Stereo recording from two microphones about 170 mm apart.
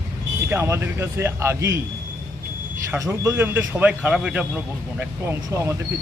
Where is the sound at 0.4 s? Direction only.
15° right (ahead or behind).